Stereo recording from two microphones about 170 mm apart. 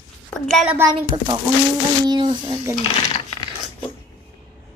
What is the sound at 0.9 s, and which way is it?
Speech, 30° right (ahead or behind).